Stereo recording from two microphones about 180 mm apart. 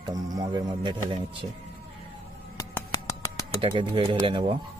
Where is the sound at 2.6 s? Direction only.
20° left (ahead or behind).